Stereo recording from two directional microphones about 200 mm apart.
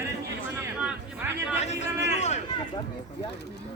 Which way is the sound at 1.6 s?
35° left (ahead or behind).